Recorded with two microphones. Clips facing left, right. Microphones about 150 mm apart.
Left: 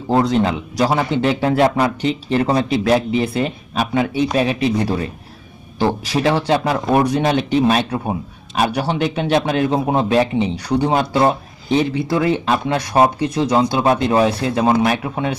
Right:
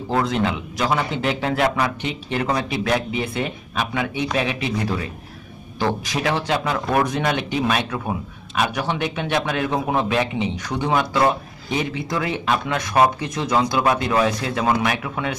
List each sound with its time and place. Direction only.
0.1 s speech: 35° left (ahead or behind)